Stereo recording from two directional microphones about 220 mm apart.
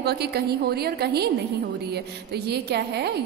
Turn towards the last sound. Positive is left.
turn(degrees=-50)  # may be behind; listen again after turning